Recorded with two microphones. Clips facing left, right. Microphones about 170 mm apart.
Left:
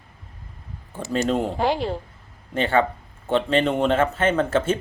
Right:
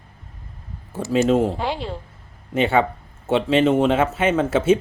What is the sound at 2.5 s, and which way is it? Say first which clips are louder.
Speech: right 2 dB; 10° right (ahead or behind).